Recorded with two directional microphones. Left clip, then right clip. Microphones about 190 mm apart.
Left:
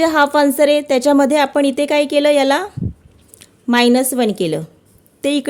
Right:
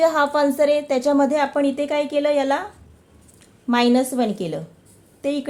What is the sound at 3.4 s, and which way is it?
A woman's voice, 40° left (ahead or behind).